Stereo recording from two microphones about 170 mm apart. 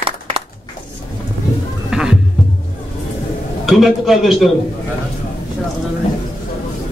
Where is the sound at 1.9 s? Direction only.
5° right (ahead or behind).